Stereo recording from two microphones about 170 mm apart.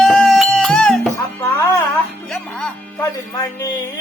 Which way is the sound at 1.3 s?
15° left (ahead or behind).